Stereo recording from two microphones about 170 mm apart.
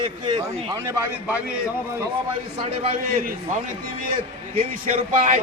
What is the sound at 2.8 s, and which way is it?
Speech, 45° right (ahead or behind).